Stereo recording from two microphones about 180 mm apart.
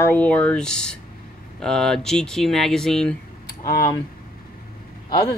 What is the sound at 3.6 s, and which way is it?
Speech, 20° left (ahead or behind).